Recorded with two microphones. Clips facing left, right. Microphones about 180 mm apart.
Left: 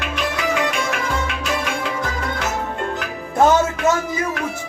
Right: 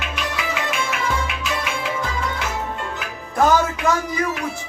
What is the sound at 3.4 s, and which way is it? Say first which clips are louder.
Music: left 2 dB; 25° left (ahead or behind).